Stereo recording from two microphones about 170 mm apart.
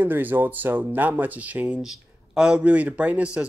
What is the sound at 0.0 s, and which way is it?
Speech, 10° right (ahead or behind).